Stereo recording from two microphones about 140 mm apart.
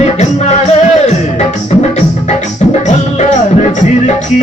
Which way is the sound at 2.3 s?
60° left (ahead or behind).